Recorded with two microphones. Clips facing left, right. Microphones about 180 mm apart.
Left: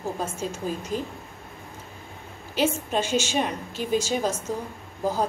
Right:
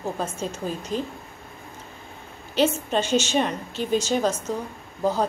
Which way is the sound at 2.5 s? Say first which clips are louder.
Right 2 dB; 10° left (ahead or behind).